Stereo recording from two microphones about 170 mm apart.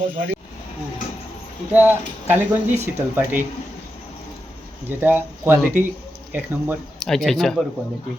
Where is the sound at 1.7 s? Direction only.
10° right (ahead or behind).